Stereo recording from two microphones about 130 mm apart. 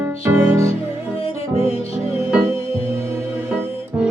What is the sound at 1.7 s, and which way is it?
Music, 50° left (ahead or behind).